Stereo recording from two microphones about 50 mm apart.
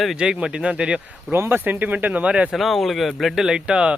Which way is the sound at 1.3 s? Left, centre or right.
Right.